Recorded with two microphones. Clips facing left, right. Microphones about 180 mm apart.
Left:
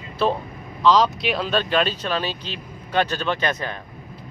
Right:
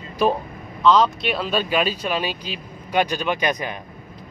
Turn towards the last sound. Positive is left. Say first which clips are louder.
# right 1 dB
turn(degrees=-15)  # may be behind; listen again after turning